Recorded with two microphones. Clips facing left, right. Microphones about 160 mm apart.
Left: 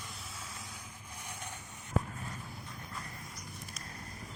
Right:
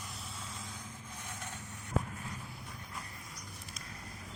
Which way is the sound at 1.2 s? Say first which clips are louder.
Left 1 dB; 15° left (ahead or behind).